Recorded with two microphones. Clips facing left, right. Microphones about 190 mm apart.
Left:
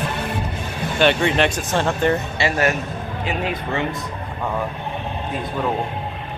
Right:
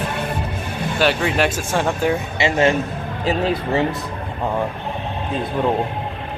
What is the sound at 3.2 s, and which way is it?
Speech, 35° right (ahead or behind).